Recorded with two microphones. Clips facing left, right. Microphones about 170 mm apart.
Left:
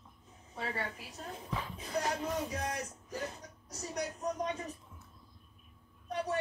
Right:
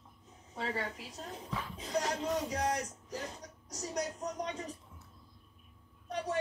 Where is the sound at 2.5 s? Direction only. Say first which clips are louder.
Right 4 dB; 75° right (ahead or behind).